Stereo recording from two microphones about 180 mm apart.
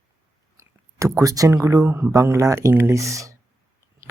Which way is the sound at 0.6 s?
20° right (ahead or behind).